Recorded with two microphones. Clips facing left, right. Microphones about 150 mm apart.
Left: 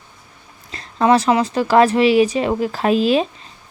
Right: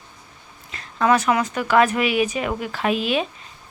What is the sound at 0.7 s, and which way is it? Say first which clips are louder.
Speech: left 4 dB; 35° left (ahead or behind).